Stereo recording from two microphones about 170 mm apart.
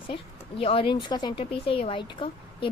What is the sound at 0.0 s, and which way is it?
Speech, 35° left (ahead or behind).